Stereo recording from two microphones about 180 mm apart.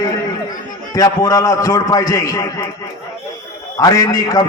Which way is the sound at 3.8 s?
20° left (ahead or behind).